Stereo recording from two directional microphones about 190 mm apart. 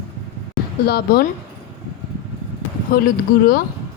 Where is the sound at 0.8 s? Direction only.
55° left (ahead or behind).